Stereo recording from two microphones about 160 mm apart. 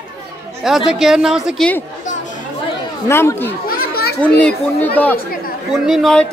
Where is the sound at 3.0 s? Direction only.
15° left (ahead or behind).